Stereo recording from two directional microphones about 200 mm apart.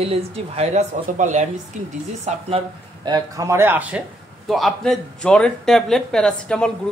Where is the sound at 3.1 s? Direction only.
15° right (ahead or behind).